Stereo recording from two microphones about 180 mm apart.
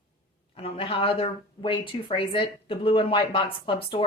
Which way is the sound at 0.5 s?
30° left (ahead or behind).